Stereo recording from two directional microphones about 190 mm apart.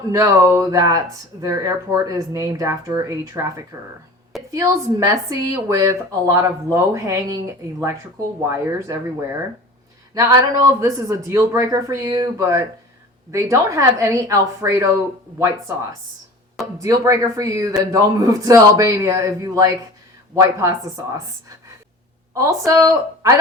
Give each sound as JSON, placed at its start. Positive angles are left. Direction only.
{"t": 0.1, "sound": "speech", "side_deg": -15}
{"t": 8.4, "sound": "speech", "side_deg": -15}
{"t": 10.2, "sound": "speech", "side_deg": -15}
{"t": 22.4, "sound": "speech", "side_deg": -15}